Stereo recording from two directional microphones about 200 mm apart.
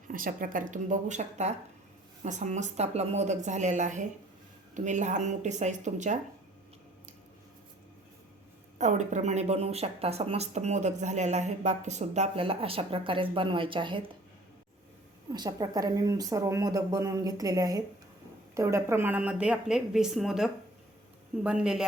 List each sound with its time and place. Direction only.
0.1 s a woman's voice: 45° right (ahead or behind)
8.8 s a woman's voice: 35° right (ahead or behind)
15.3 s a woman's voice: 20° right (ahead or behind); by 21.8 s 5° right (ahead or behind)